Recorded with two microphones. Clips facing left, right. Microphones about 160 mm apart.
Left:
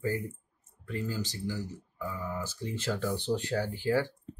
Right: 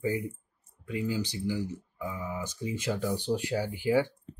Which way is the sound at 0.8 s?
15° right (ahead or behind).